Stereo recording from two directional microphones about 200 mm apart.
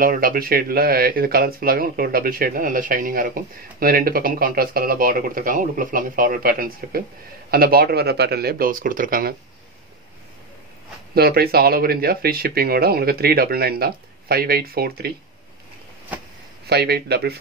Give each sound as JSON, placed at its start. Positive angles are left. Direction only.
{"t": 0.0, "sound": "speech", "side_deg": -45}
{"t": 11.1, "sound": "speech", "side_deg": -50}
{"t": 16.6, "sound": "speech", "side_deg": -55}